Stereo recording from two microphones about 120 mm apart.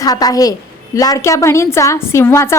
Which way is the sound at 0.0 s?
30° left (ahead or behind).